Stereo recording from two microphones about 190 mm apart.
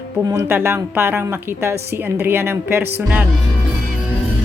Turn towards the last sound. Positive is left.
turn(degrees=-10)  # may be behind; listen again after turning